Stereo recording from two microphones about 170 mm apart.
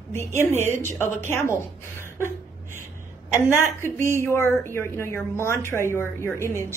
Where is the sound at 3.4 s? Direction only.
15° left (ahead or behind).